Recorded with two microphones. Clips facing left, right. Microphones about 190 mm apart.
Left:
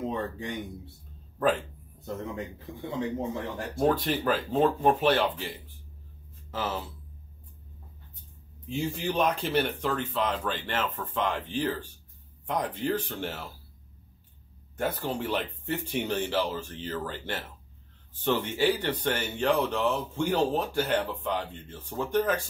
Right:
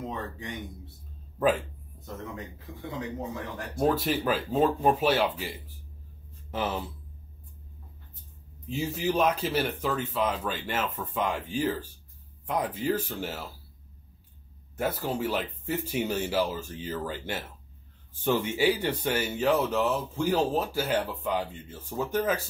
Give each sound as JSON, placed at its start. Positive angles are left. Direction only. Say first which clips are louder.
{"t": 0.1, "sound": "speech", "louder": "left 4 dB", "side_deg": 30}
{"t": 1.4, "sound": "speech", "louder": "right 1 dB", "side_deg": -5}
{"t": 3.0, "sound": "a man's voice", "louder": "left 4 dB", "side_deg": 30}
{"t": 3.7, "sound": "speech", "louder": "even", "side_deg": -5}
{"t": 6.5, "sound": "speech", "louder": "right 2 dB", "side_deg": -15}
{"t": 8.6, "sound": "speech", "louder": "right 1 dB", "side_deg": -5}
{"t": 14.8, "sound": "speech", "louder": "right 1 dB", "side_deg": -5}